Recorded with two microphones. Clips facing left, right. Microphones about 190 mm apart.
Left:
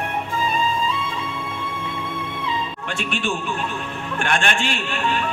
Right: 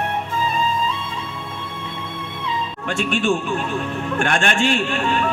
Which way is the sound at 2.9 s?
45° right (ahead or behind).